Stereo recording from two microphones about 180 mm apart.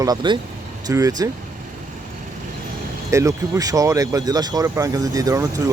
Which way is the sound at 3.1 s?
15° right (ahead or behind).